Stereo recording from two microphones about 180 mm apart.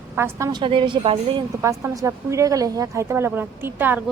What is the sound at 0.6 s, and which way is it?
Speech, 30° right (ahead or behind).